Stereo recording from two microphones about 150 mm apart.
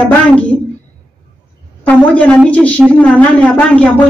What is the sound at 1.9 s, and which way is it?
Speech, 10° left (ahead or behind).